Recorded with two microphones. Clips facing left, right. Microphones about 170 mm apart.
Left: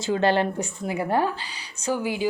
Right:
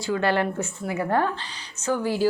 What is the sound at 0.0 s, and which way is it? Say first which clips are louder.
A woman's voice: left 2 dB; 20° left (ahead or behind).